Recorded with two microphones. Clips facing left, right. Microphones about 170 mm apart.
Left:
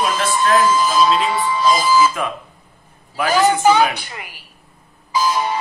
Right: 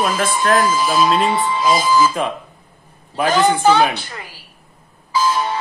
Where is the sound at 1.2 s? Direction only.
25° right (ahead or behind).